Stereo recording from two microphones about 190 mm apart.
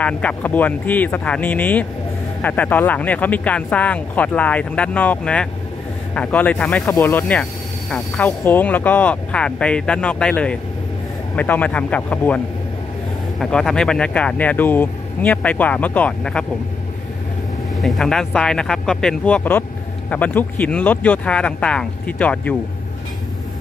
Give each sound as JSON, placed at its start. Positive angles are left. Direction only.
{"t": 0.0, "sound": "speech", "side_deg": 5}
{"t": 13.4, "sound": "speech", "side_deg": 0}
{"t": 17.8, "sound": "speech", "side_deg": 0}